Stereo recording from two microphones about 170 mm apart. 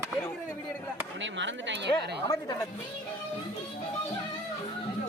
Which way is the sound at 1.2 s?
90° right.